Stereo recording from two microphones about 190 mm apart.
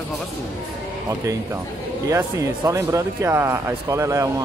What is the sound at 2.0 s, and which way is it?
Speech, 15° right (ahead or behind).